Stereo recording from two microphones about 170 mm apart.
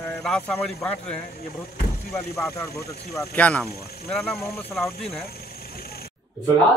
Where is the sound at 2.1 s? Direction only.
15° left (ahead or behind); by 5.2 s centre (ahead or behind).